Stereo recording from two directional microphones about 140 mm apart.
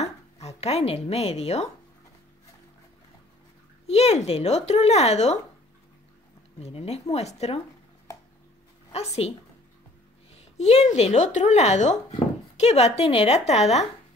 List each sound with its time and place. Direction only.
0.0 s speech: 50° left (ahead or behind)
3.8 s speech: 45° left (ahead or behind)
6.6 s speech: 45° left (ahead or behind)
8.9 s speech: 50° left (ahead or behind)
10.3 s speech: 50° left (ahead or behind)